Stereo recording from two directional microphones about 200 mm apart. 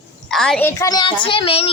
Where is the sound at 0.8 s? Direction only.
20° left (ahead or behind).